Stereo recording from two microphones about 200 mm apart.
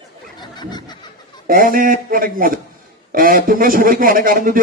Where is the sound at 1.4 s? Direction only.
45° right (ahead or behind).